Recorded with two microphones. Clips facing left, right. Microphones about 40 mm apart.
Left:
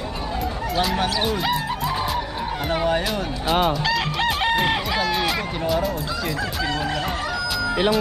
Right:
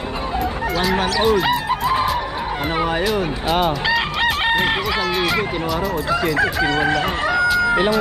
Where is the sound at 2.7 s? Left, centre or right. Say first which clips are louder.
Even; centre.